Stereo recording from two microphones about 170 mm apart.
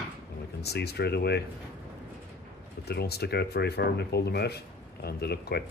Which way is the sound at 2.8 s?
70° left (ahead or behind).